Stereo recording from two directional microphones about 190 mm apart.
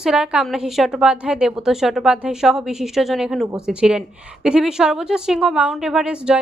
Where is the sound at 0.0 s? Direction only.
5° right (ahead or behind).